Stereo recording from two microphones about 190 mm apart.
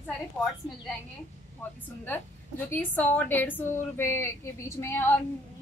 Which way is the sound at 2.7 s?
10° left (ahead or behind).